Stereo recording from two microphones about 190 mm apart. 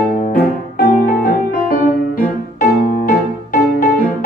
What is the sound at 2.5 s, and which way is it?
Music, 50° left (ahead or behind).